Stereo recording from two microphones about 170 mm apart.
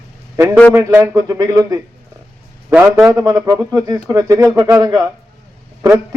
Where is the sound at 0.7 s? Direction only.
15° right (ahead or behind).